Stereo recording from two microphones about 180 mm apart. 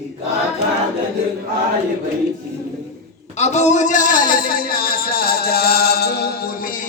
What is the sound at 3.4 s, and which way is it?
A man's voice, 40° left (ahead or behind).